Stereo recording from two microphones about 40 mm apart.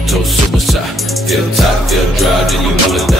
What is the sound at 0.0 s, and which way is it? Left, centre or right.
Music, centre.